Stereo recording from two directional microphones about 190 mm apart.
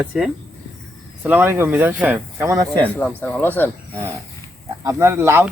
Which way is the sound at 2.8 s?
10° left (ahead or behind).